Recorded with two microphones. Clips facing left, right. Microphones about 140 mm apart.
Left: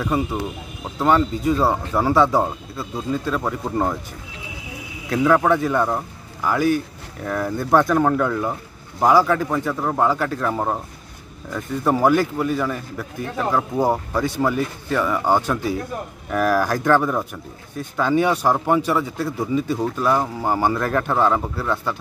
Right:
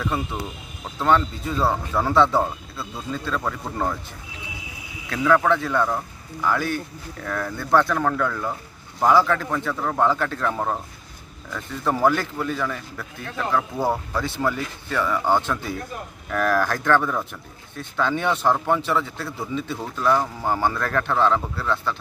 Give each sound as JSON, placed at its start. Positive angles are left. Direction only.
{"t": 0.0, "sound": "a man's voice", "side_deg": 10}
{"t": 5.1, "sound": "a man's voice", "side_deg": 20}